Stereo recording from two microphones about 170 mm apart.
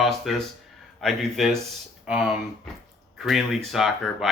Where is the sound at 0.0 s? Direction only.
Centre (ahead or behind).